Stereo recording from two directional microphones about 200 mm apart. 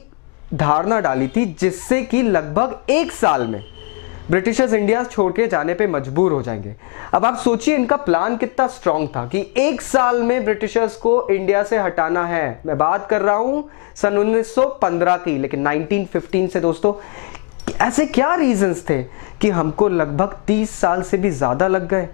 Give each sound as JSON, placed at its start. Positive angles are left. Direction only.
{"t": 0.6, "sound": "speech", "side_deg": 15}